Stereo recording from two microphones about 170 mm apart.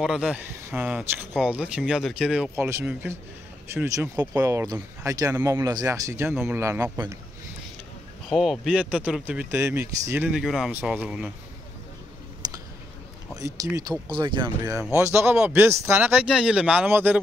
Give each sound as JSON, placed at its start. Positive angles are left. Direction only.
{"t": 0.0, "sound": "speech", "side_deg": -5}
{"t": 8.3, "sound": "speech", "side_deg": 0}
{"t": 12.4, "sound": "a sound", "side_deg": -25}
{"t": 13.4, "sound": "speech", "side_deg": -20}
{"t": 15.0, "sound": "speech", "side_deg": -15}